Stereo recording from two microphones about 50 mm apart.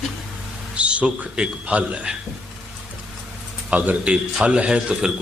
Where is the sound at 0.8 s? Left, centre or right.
Right.